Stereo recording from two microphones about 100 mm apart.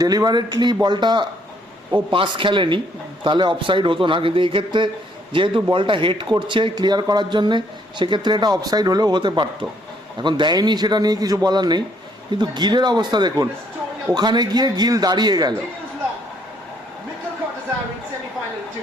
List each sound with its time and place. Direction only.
0.0 s speech: 40° right (ahead or behind)